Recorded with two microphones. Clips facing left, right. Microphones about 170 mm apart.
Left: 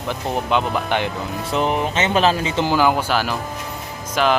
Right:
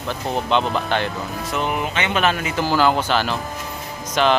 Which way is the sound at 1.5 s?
30° left (ahead or behind).